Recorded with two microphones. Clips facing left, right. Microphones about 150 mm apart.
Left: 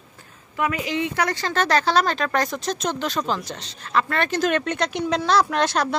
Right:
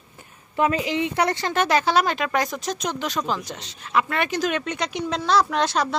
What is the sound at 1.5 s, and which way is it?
Speech, 10° right (ahead or behind).